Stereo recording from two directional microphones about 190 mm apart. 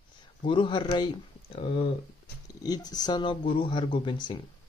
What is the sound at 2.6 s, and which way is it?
Speech, 20° left (ahead or behind).